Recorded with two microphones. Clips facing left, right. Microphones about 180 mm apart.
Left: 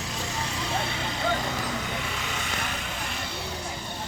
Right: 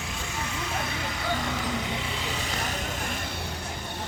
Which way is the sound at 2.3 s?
40° right (ahead or behind).